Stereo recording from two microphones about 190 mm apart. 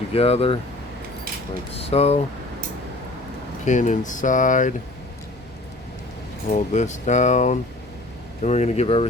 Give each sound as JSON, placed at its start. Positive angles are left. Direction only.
{"t": 0.1, "sound": "speech", "side_deg": 30}
{"t": 1.8, "sound": "speech", "side_deg": 30}
{"t": 3.7, "sound": "speech", "side_deg": 40}
{"t": 6.5, "sound": "speech", "side_deg": 40}